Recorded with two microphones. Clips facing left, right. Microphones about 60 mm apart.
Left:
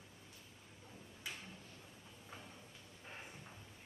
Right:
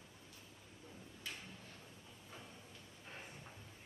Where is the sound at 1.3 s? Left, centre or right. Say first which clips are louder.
Left 1 dB; centre.